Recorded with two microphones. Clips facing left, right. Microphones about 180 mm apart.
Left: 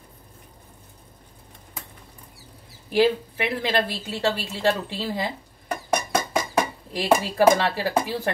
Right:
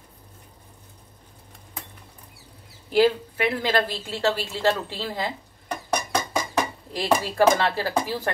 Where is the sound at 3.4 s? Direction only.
15° left (ahead or behind).